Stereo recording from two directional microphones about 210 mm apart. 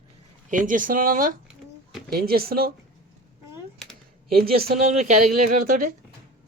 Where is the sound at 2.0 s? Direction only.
45° right (ahead or behind).